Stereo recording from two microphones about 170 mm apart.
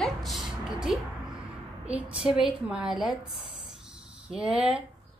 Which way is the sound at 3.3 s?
35° left (ahead or behind).